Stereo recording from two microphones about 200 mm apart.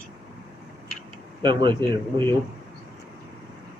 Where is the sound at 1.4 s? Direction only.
25° right (ahead or behind).